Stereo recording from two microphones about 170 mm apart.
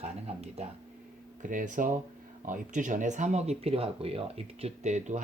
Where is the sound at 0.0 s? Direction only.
40° right (ahead or behind).